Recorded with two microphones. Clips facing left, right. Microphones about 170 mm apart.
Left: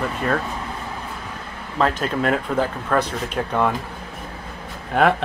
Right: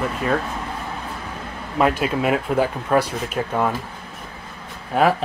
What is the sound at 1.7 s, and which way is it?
Speech, 10° right (ahead or behind).